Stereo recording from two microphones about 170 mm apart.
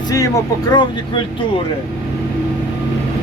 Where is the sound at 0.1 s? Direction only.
20° left (ahead or behind).